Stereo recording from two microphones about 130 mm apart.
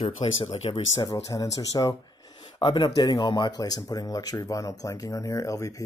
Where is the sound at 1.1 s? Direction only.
25° left (ahead or behind).